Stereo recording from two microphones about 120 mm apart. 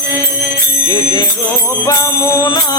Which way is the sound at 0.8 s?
25° left (ahead or behind).